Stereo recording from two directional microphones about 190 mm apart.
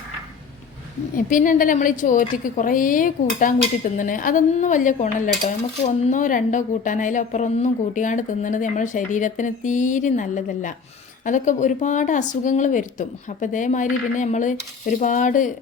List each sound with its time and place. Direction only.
1.1 s a woman's voice: 45° left (ahead or behind)